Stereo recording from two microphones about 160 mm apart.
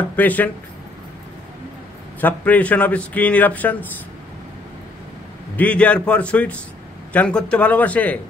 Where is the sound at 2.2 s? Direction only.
10° left (ahead or behind).